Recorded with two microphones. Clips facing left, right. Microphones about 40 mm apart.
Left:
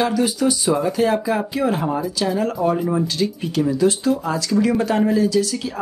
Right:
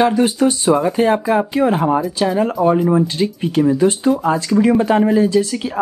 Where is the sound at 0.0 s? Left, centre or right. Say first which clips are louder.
Right 5 dB; right.